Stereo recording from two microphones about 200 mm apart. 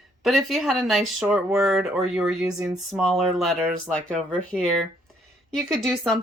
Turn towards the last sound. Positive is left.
turn(degrees=0)  # may be behind; listen again after turning